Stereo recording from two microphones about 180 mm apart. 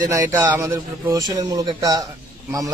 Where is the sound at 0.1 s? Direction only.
15° right (ahead or behind).